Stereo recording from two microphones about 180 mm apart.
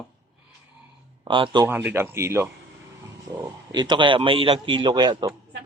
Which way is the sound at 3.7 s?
25° right (ahead or behind).